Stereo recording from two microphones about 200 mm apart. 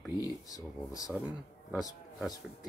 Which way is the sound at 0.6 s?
15° left (ahead or behind).